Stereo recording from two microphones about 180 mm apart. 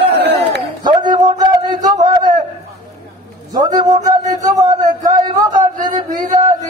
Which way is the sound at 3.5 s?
20° right (ahead or behind).